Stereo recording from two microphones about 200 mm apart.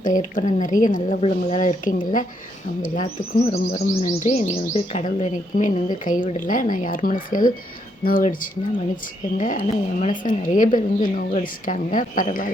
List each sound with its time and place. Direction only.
0.0 s speech: 40° left (ahead or behind)